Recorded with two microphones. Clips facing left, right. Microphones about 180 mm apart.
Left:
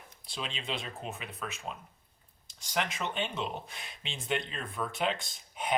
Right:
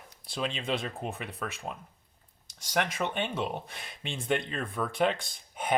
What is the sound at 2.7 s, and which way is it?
Speech, 55° right (ahead or behind).